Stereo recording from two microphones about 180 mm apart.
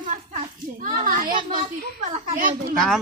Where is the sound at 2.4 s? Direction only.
50° right (ahead or behind).